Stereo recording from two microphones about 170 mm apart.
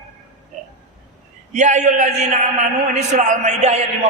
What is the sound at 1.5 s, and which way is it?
A man's voice, 45° right (ahead or behind).